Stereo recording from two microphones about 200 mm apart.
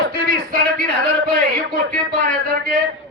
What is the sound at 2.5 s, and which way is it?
Speech, 45° right (ahead or behind).